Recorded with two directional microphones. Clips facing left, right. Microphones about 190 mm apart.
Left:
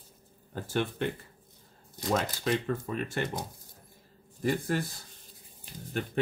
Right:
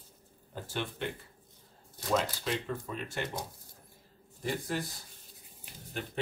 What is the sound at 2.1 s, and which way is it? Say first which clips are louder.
Speech: left 2 dB; 50° left (ahead or behind).